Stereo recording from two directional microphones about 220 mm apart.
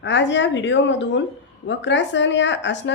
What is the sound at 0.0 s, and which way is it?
Speech, 55° left (ahead or behind).